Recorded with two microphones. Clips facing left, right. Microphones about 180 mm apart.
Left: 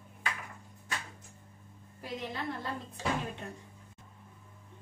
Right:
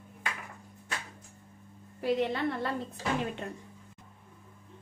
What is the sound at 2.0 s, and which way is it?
Speech, 65° right (ahead or behind).